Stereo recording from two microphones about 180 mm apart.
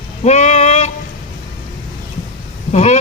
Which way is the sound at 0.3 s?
40° left (ahead or behind).